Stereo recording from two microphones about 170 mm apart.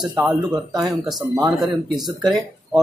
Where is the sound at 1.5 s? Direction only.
Centre (ahead or behind).